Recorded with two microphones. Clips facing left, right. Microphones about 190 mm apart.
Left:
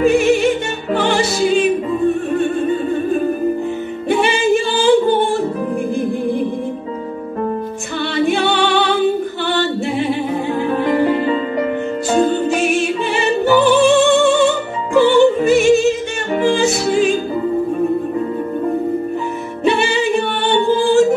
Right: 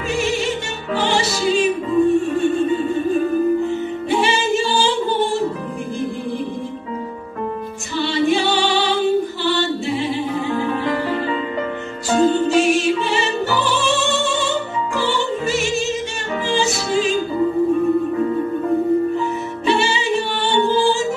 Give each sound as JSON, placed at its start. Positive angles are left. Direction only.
{"t": 0.0, "sound": "music", "side_deg": 55}
{"t": 4.1, "sound": "singing", "side_deg": 55}
{"t": 8.0, "sound": "a capella", "side_deg": 55}
{"t": 12.4, "sound": "music", "side_deg": 55}
{"t": 15.0, "sound": "opera", "side_deg": 55}
{"t": 16.4, "sound": "music", "side_deg": 55}
{"t": 19.6, "sound": "music", "side_deg": 55}